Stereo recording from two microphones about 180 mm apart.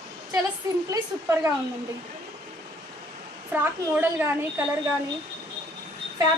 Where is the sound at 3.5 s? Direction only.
10° right (ahead or behind).